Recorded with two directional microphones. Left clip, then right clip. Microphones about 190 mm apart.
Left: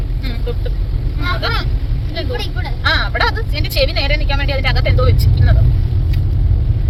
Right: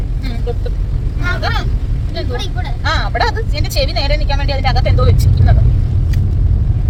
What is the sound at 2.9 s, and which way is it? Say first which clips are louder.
Speech: even; 10° right (ahead or behind).